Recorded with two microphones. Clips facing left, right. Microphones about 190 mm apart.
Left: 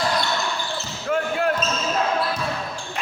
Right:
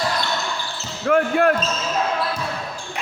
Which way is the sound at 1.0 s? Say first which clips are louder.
Right 6 dB; 60° right (ahead or behind).